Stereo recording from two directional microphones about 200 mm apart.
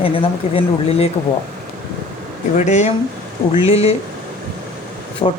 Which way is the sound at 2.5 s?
35° left (ahead or behind).